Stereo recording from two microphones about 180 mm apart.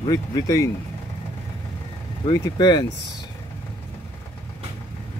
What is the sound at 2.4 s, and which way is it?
Speech, 25° left (ahead or behind).